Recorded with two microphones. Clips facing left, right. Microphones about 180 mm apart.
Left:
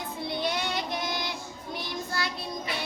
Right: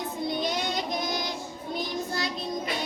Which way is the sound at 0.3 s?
15° right (ahead or behind).